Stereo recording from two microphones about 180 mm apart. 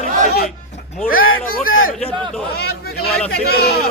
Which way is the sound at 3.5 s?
60° left (ahead or behind).